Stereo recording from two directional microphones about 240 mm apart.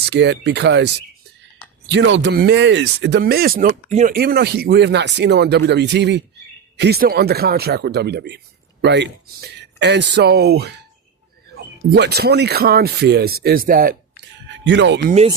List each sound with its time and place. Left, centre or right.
0.0 s speech: right
11.9 s speech: right